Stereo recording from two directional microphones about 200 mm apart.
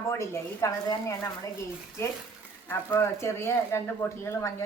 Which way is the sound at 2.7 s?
15° left (ahead or behind).